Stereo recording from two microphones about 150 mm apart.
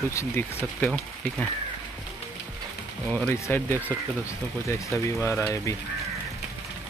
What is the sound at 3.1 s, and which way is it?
Speech, 10° left (ahead or behind).